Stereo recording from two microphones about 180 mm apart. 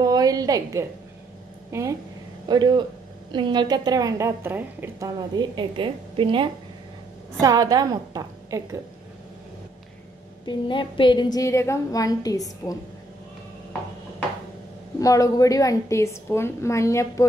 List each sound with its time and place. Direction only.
0.0 s a sound: 20° right (ahead or behind)
1.7 s a woman's voice: 15° right (ahead or behind)
10.4 s a woman's voice: 25° left (ahead or behind)
15.0 s a woman's voice: 20° left (ahead or behind)